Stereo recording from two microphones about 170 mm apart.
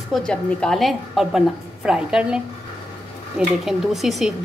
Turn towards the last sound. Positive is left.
turn(degrees=0)  # may be behind; listen again after turning